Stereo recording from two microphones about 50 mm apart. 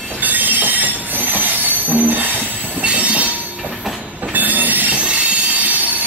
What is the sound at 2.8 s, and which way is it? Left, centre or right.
Train, right.